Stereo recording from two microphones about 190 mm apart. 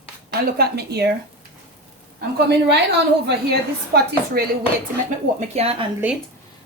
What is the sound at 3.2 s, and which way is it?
Speech, 55° right (ahead or behind).